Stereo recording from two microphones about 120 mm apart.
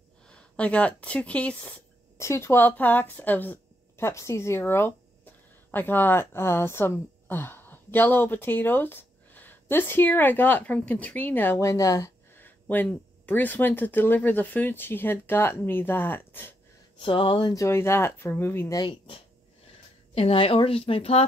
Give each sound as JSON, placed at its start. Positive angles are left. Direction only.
{"t": 0.3, "sound": "speech", "side_deg": 10}
{"t": 2.1, "sound": "speech", "side_deg": 25}
{"t": 17.0, "sound": "speech", "side_deg": 45}
{"t": 17.6, "sound": "speech", "side_deg": 20}
{"t": 18.8, "sound": "speech", "side_deg": 45}
{"t": 20.2, "sound": "speech", "side_deg": 55}